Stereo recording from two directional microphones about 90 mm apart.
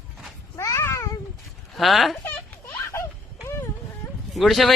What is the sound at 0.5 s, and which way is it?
Babbling, 35° left (ahead or behind).